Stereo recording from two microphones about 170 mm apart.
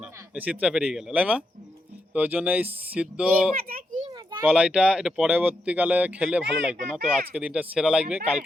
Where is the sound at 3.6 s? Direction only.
55° right (ahead or behind).